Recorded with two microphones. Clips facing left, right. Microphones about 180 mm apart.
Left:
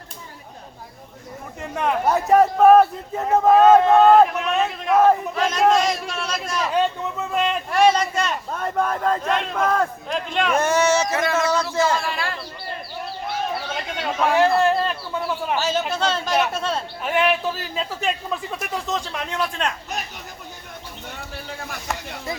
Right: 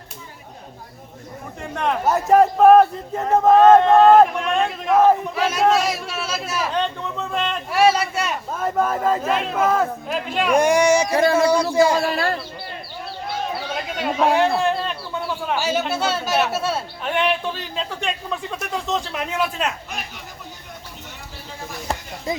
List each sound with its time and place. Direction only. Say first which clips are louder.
1.7 s speech: even; 5° left (ahead or behind)
6.7 s speech: left 5 dB; 10° left (ahead or behind)
7.7 s speech: right 1 dB; 5° right (ahead or behind)
11.1 s speech: right 5 dB; 30° right (ahead or behind)
13.9 s a sound: right 2 dB; 5° right (ahead or behind)
15.5 s speech: right 2 dB; 10° right (ahead or behind)
17.0 s speech: left 2 dB; 5° left (ahead or behind)